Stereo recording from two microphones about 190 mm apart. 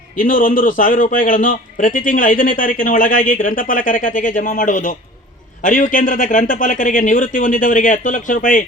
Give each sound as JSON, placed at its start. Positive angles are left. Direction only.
{"t": 0.2, "sound": "a man's voice", "side_deg": 45}